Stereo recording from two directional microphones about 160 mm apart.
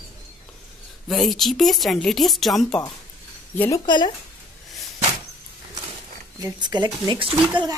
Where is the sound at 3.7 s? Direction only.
25° left (ahead or behind).